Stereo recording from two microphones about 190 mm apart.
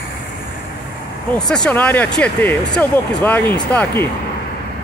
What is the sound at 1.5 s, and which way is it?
Speech, 5° left (ahead or behind).